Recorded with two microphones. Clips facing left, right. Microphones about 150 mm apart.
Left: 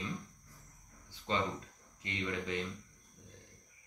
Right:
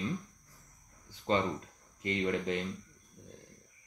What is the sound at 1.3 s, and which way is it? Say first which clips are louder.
Speech: right 5 dB; 40° right (ahead or behind).